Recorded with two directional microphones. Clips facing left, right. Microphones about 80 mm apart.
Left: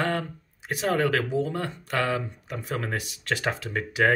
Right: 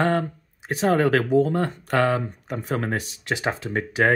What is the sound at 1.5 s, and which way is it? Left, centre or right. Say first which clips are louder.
Speech: right 6 dB; right.